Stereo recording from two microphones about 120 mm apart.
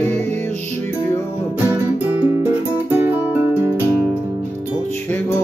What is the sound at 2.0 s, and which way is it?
Music, 15° right (ahead or behind).